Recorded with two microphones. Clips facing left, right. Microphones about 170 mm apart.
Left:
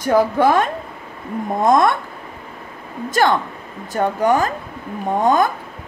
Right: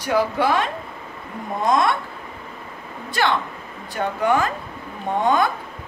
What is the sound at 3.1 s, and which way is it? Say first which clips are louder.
A woman's voice: left 5 dB; 45° left (ahead or behind).